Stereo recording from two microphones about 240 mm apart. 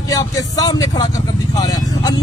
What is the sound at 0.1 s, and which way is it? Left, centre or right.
Speech, centre.